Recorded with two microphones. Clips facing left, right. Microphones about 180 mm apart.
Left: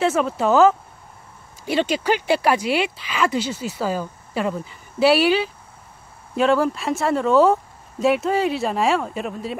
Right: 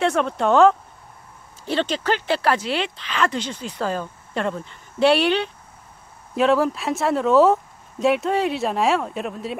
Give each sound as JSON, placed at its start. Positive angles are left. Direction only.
{"t": 0.0, "sound": "speech", "side_deg": 5}